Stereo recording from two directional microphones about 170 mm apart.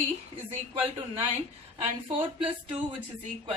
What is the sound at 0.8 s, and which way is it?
Speech, 35° right (ahead or behind).